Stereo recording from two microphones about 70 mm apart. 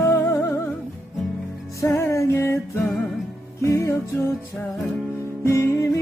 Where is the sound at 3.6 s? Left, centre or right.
Left.